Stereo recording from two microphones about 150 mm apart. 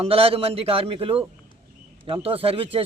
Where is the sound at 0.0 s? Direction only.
40° right (ahead or behind).